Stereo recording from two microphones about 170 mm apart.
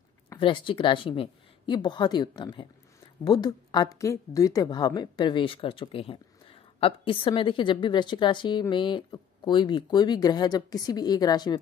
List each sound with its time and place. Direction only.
0.4 s a woman's voice: 30° left (ahead or behind)